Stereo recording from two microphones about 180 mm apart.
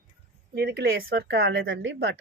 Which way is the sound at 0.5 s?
65° right (ahead or behind).